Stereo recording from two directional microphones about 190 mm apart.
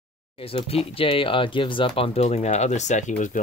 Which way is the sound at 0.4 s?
30° left (ahead or behind).